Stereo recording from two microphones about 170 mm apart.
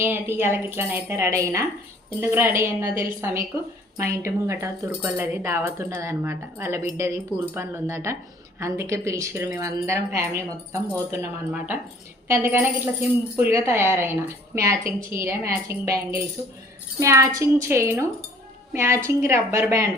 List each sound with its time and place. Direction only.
0.0 s speech: 15° right (ahead or behind)